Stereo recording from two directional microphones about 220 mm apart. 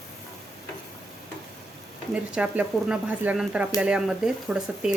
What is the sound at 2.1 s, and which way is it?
Speech, 5° right (ahead or behind).